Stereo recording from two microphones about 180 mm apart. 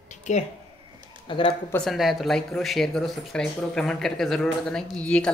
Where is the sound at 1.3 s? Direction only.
25° left (ahead or behind).